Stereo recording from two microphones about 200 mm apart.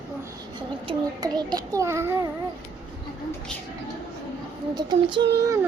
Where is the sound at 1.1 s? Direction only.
20° right (ahead or behind).